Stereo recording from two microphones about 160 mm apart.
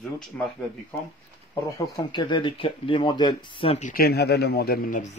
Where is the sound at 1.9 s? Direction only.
30° left (ahead or behind).